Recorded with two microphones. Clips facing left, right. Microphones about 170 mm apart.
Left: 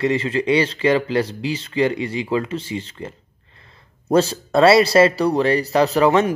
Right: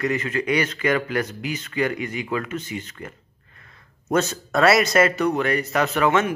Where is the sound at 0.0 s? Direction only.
30° left (ahead or behind).